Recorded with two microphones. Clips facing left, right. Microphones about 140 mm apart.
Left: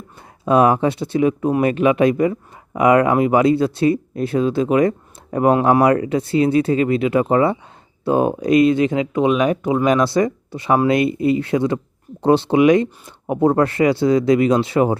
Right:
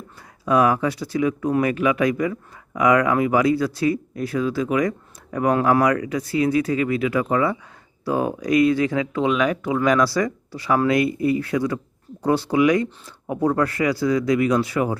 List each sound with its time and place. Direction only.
0.4 s speech: 25° left (ahead or behind)